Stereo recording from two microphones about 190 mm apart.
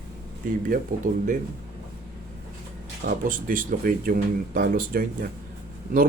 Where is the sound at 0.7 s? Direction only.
45° right (ahead or behind).